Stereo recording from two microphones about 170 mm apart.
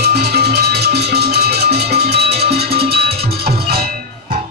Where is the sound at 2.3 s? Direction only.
35° right (ahead or behind).